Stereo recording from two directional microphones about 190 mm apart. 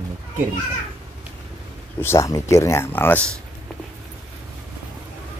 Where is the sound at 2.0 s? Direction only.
15° left (ahead or behind).